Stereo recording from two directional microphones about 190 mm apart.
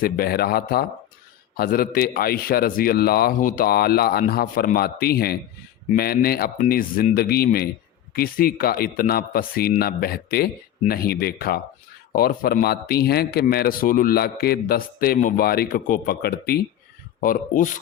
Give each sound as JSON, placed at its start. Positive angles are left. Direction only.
{"t": 0.0, "sound": "a man's voice", "side_deg": 55}
{"t": 17.2, "sound": "a man's voice", "side_deg": 45}